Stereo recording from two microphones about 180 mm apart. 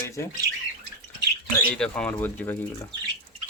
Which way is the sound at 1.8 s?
5° left (ahead or behind).